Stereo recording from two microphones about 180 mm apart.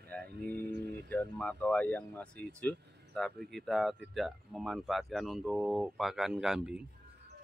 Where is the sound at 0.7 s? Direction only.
65° right (ahead or behind).